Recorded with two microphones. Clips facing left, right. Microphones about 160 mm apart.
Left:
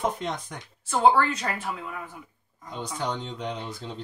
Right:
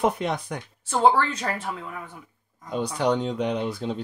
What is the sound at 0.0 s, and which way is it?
Speech, 70° right (ahead or behind).